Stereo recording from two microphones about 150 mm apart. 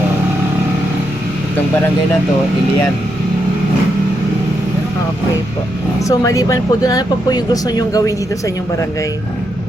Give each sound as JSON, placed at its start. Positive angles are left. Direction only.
{"t": 6.1, "sound": "speech", "side_deg": 20}